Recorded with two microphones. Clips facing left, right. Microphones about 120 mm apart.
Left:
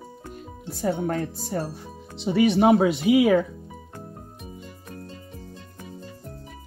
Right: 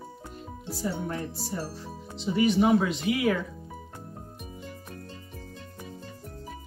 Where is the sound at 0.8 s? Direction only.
85° left.